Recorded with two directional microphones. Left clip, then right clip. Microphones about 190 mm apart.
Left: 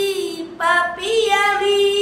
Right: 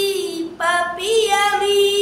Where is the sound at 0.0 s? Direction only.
Centre (ahead or behind).